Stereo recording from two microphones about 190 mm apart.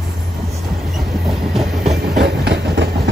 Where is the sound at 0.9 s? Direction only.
Centre (ahead or behind).